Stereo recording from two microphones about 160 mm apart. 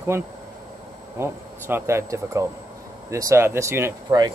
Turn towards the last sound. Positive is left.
turn(degrees=-20)  # may be behind; listen again after turning